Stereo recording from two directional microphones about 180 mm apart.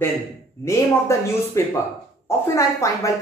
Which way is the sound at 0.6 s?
15° left (ahead or behind).